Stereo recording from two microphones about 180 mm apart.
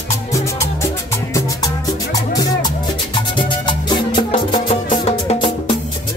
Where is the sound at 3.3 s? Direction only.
25° left (ahead or behind).